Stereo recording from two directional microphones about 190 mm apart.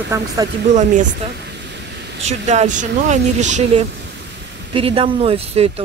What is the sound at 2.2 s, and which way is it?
Speech, 35° right (ahead or behind).